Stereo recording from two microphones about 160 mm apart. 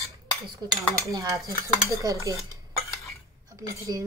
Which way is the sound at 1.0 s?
20° right (ahead or behind).